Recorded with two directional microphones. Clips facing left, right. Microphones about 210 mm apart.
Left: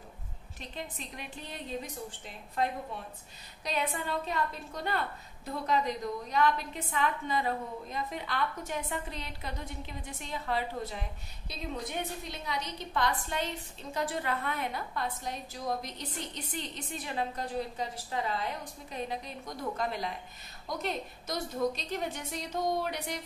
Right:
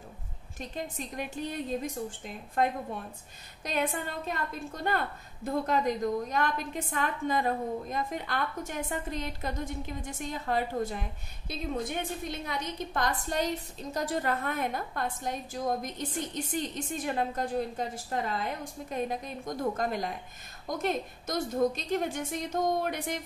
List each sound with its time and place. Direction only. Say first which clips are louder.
0.6 s a woman's voice: right 5 dB; 45° right (ahead or behind)